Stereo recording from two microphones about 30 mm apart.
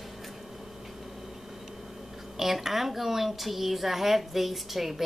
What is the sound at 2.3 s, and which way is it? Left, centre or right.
A woman's voice, centre.